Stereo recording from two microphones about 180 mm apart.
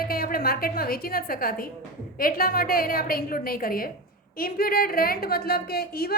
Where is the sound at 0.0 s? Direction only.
55° left (ahead or behind).